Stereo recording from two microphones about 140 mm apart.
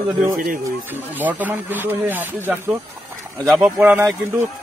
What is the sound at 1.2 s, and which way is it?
Speech, 10° right (ahead or behind).